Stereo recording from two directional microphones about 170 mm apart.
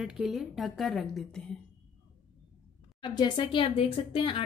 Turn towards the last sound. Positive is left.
turn(degrees=30)  # may be behind; listen again after turning